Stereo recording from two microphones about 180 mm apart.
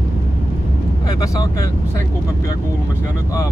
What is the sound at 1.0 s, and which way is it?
Speech, 20° left (ahead or behind).